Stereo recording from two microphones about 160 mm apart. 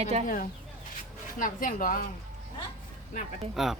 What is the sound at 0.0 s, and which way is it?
Speech, 40° right (ahead or behind).